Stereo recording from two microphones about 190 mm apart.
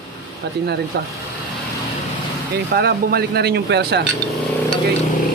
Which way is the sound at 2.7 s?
55° right (ahead or behind).